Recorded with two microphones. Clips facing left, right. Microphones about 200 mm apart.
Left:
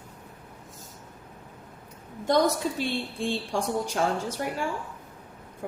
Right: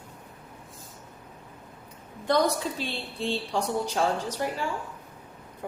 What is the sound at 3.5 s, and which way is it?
Speech, 50° left (ahead or behind).